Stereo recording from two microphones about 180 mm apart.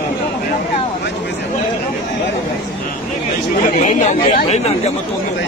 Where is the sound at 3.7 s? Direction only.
40° left (ahead or behind).